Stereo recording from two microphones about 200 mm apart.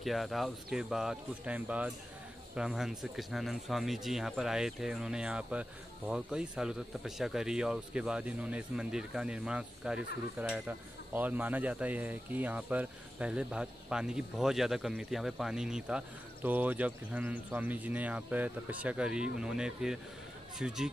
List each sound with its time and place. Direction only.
0.0 s speech: centre (ahead or behind)